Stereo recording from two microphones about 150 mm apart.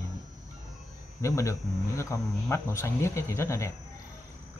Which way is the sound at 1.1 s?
20° left (ahead or behind).